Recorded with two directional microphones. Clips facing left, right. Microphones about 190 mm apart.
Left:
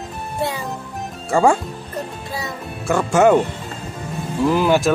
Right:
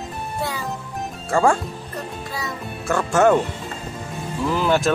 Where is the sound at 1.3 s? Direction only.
10° left (ahead or behind).